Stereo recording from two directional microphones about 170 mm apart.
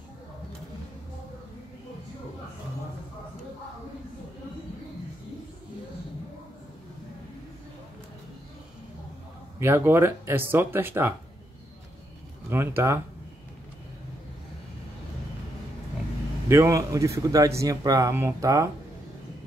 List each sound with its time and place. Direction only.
9.6 s speech: 15° right (ahead or behind)
12.4 s speech: 15° right (ahead or behind)
16.4 s a man's voice: 15° right (ahead or behind)